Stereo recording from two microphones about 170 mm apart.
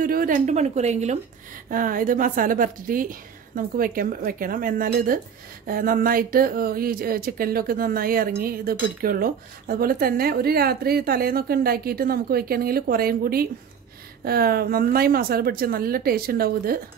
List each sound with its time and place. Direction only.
0.0 s a woman's voice: 55° right (ahead or behind)
1.7 s speech: 55° right (ahead or behind)